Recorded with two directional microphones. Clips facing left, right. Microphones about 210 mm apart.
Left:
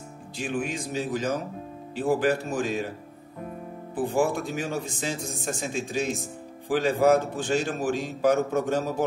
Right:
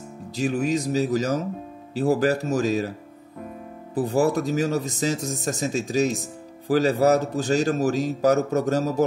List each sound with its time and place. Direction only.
0.4 s speech: 40° right (ahead or behind)
3.9 s speech: 40° right (ahead or behind)